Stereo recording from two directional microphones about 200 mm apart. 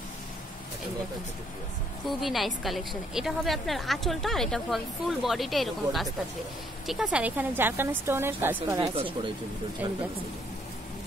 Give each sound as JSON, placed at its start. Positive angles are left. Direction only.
{"t": 2.0, "sound": "a woman's voice", "side_deg": 0}
{"t": 8.9, "sound": "speech", "side_deg": -25}